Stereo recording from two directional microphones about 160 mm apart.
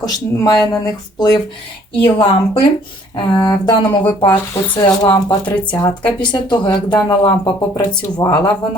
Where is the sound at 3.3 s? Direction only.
25° left (ahead or behind).